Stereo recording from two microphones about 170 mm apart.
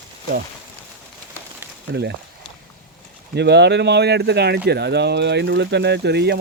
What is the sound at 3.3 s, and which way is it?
Speech, 90° right.